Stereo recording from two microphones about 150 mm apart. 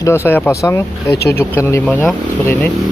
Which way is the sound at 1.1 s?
90° left.